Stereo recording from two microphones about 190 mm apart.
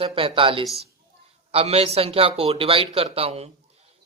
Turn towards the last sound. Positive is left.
turn(degrees=-30)  # may be behind; listen again after turning